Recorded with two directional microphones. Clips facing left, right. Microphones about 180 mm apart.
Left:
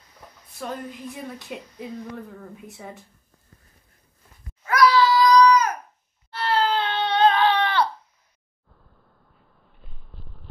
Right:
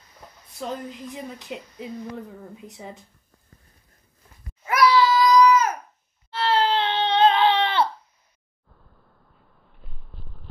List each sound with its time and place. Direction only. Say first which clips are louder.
0.6 s speech: right 1 dB; 20° right (ahead or behind)
4.6 s a sound: even; 20° right (ahead or behind)
6.3 s baby cry: right 1 dB; 25° right (ahead or behind)